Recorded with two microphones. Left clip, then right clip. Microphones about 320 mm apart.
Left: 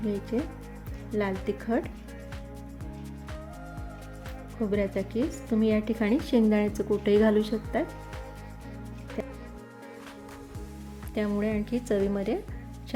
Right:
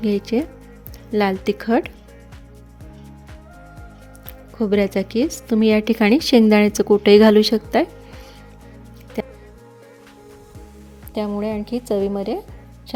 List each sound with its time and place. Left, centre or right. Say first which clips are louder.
0.0 s a woman's voice: right 10 dB; right
4.6 s a woman's voice: right 10 dB; right
9.2 s music: right 9 dB; right
11.1 s a woman's voice: right 6 dB; centre